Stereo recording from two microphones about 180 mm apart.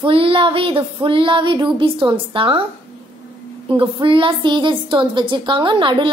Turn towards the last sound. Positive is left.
turn(degrees=-25)  # may be behind; listen again after turning